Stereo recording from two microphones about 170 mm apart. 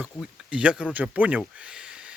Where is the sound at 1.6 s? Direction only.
5° right (ahead or behind).